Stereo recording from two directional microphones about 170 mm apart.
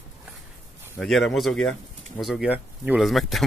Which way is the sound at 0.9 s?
Centre (ahead or behind).